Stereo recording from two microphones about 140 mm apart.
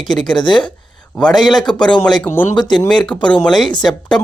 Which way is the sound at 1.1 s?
5° left (ahead or behind).